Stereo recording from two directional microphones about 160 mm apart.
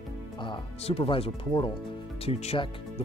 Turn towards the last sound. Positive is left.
turn(degrees=40)  # may be behind; listen again after turning